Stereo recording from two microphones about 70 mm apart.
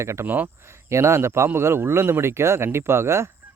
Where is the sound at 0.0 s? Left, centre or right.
Right.